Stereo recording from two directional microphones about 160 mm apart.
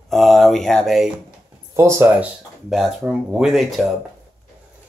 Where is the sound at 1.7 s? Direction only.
15° right (ahead or behind).